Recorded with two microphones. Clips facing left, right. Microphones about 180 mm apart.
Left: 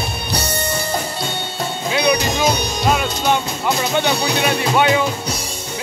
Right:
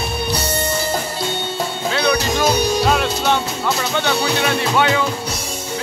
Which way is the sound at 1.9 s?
15° left (ahead or behind).